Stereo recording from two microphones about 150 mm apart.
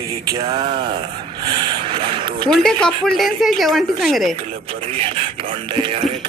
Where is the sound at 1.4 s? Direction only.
30° right (ahead or behind).